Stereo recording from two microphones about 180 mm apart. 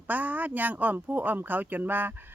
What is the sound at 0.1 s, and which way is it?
Speech, 10° right (ahead or behind).